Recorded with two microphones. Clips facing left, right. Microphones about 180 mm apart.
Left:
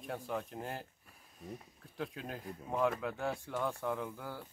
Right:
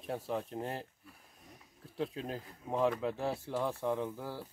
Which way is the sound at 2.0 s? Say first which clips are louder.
Right 4 dB; 30° right (ahead or behind).